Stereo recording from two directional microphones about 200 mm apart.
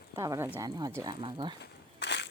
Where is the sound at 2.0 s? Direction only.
60° left (ahead or behind).